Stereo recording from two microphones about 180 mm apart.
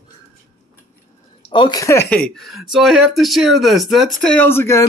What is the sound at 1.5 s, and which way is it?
Speech, 25° left (ahead or behind).